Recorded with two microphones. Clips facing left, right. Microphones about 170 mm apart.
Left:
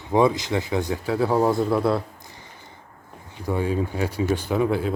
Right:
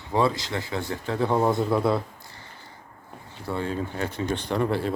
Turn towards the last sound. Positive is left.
turn(degrees=0)  # may be behind; listen again after turning